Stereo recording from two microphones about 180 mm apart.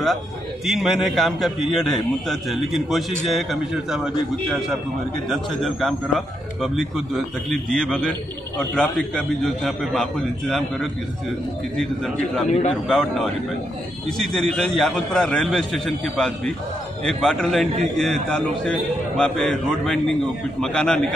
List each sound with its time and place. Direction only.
0.7 s a man's voice: centre (ahead or behind)
12.4 s speech: 40° left (ahead or behind)
12.8 s a man's voice: 5° left (ahead or behind)